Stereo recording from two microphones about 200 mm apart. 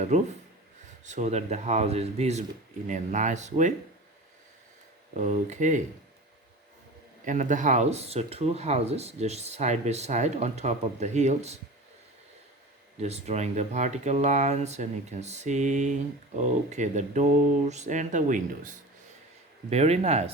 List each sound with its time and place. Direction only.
0.1 s speech: 35° right (ahead or behind)
5.1 s speech: 35° right (ahead or behind)
7.3 s speech: 40° right (ahead or behind)
13.0 s speech: 30° right (ahead or behind)